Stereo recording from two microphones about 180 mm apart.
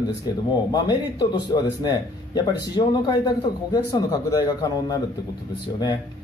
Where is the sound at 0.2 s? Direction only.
20° left (ahead or behind).